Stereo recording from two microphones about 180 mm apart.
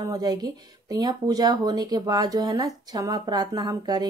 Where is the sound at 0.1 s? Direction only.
20° right (ahead or behind).